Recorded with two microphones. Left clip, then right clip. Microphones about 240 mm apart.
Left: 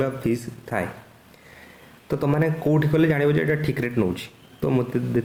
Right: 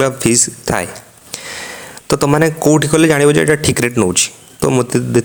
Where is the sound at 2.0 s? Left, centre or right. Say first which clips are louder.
Right 11 dB; right.